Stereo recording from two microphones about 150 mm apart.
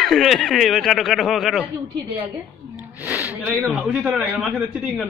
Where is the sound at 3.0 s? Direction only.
10° right (ahead or behind).